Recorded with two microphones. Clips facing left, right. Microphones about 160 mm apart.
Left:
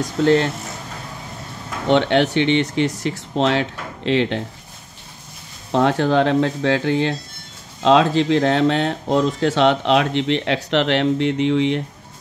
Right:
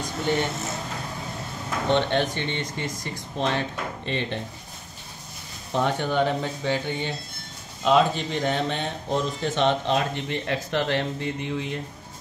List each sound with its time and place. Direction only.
0.2 s speech: 90° left
1.9 s speech: 85° left
5.7 s speech: 90° left